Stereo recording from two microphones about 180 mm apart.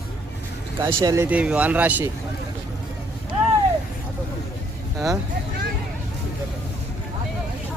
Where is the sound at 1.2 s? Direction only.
10° right (ahead or behind).